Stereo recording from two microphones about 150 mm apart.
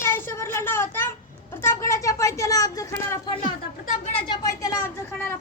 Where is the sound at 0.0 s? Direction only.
15° left (ahead or behind).